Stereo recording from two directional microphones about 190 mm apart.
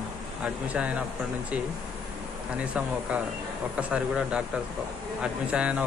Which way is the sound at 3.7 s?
5° right (ahead or behind).